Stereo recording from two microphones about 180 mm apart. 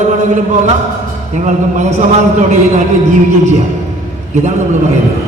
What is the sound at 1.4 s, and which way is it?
A man's voice, 40° right (ahead or behind).